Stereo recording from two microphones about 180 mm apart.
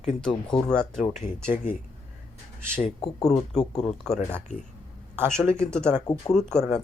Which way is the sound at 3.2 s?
5° left (ahead or behind).